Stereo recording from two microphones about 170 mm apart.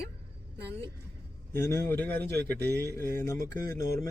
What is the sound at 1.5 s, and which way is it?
A woman's voice, 15° left (ahead or behind).